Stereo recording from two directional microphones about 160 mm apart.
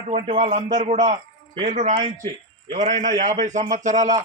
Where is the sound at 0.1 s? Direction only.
40° right (ahead or behind).